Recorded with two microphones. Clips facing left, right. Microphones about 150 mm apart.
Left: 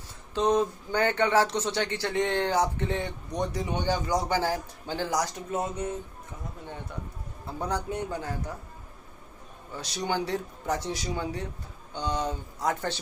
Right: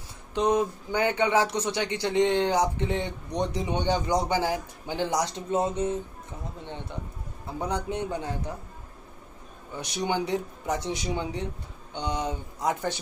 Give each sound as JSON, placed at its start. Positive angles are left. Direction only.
{"t": 0.3, "sound": "speech", "side_deg": -10}
{"t": 7.4, "sound": "a man's voice", "side_deg": -15}
{"t": 9.8, "sound": "speech", "side_deg": -20}